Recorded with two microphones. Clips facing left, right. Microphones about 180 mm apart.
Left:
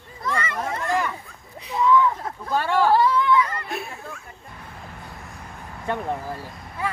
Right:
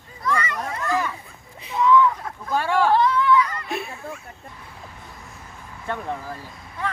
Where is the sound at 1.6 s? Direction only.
Centre (ahead or behind).